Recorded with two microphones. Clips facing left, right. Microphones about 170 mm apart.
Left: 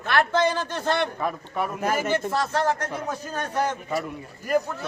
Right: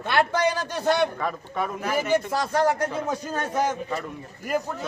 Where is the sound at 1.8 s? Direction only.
45° left (ahead or behind).